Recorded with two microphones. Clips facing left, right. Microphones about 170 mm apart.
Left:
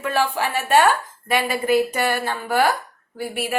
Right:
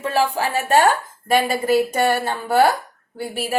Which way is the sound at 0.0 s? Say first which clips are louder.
Right 2 dB; 35° right (ahead or behind).